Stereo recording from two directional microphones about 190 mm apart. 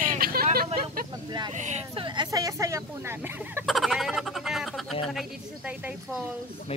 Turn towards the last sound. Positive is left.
turn(degrees=-5)  # may be behind; listen again after turning